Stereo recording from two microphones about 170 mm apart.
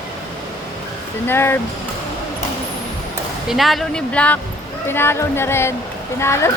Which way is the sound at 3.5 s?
Centre (ahead or behind).